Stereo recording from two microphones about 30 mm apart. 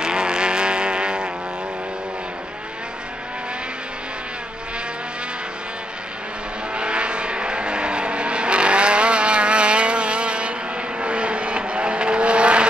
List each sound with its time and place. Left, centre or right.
0.0 s vehicle: right
6.7 s vehicle: right